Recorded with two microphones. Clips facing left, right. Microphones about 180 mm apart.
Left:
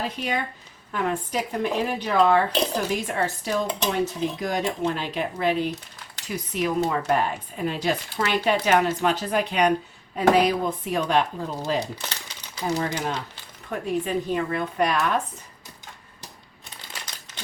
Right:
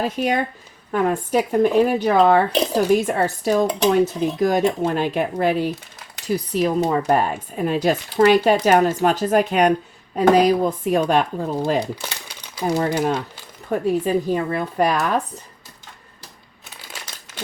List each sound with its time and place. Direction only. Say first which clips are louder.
0.0 s speech: right 7 dB; 45° right (ahead or behind)
6.2 s speech: right 6 dB; 35° right (ahead or behind)
7.1 s speech: right 4 dB; 45° right (ahead or behind)
12.0 s crumpling: right 3 dB; 10° right (ahead or behind)
12.8 s speech: right 7 dB; 45° right (ahead or behind)